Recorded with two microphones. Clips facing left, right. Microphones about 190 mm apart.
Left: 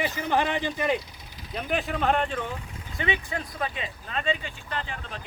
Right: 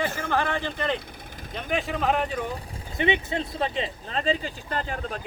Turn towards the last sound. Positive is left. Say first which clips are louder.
# right 5 dB
turn(degrees=-45)  # may be behind; listen again after turning